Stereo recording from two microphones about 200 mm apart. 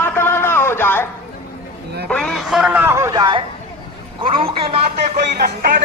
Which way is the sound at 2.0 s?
5° left (ahead or behind).